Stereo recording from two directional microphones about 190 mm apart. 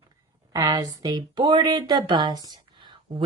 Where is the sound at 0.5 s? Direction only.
20° right (ahead or behind).